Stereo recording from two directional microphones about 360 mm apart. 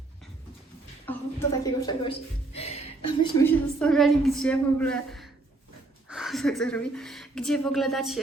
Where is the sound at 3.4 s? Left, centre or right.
Centre.